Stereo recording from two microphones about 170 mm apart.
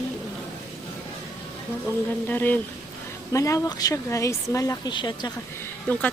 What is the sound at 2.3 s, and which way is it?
Speech, 10° left (ahead or behind).